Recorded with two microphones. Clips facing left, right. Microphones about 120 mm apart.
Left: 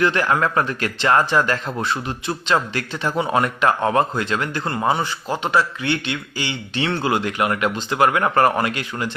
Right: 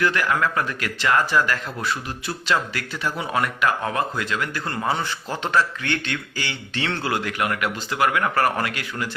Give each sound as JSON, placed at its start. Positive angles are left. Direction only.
{"t": 0.0, "sound": "speech", "side_deg": 25}